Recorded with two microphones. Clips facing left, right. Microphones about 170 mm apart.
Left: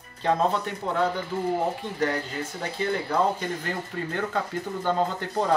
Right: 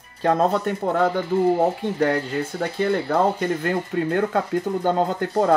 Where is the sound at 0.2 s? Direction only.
45° right (ahead or behind).